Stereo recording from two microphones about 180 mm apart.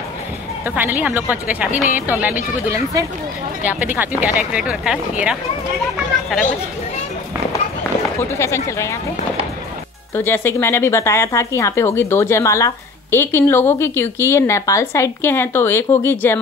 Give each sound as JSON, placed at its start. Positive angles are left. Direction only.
{"t": 0.7, "sound": "speech", "side_deg": -10}
{"t": 8.2, "sound": "speech", "side_deg": 15}
{"t": 10.1, "sound": "speech", "side_deg": 10}